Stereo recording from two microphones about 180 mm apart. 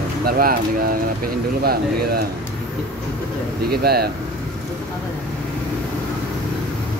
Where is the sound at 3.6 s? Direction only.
60° right (ahead or behind).